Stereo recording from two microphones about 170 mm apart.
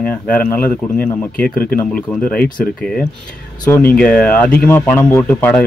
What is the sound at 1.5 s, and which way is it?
Speech, 60° left (ahead or behind).